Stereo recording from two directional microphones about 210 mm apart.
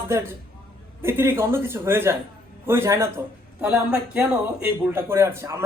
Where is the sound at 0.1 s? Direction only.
15° right (ahead or behind).